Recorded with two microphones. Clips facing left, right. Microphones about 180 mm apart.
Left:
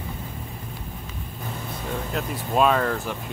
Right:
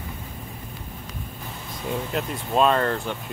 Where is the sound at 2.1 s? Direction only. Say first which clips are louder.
Right 1 dB; centre (ahead or behind).